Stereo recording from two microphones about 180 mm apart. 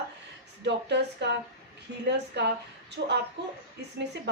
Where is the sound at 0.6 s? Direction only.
75° right (ahead or behind).